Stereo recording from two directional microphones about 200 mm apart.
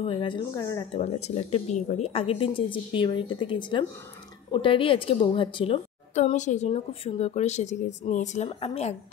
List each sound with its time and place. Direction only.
0.0 s a woman's voice: 25° left (ahead or behind)
1.0 s a woman's voice: 30° left (ahead or behind)